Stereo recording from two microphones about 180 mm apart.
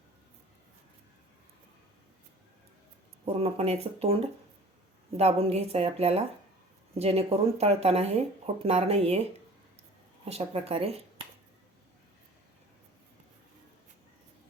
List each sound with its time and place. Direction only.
3.2 s speech: 35° right (ahead or behind)
10.2 s speech: 35° right (ahead or behind)